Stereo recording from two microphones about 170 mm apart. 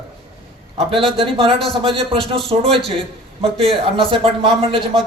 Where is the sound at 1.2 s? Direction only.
30° right (ahead or behind).